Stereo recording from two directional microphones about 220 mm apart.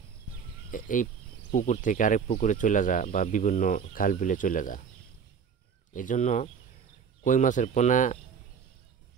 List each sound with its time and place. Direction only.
0.7 s speech: 35° left (ahead or behind)
5.9 s speech: 35° left (ahead or behind)